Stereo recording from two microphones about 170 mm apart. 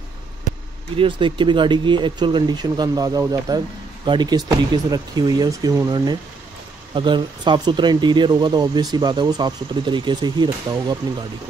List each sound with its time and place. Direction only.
0.9 s speech: 30° right (ahead or behind)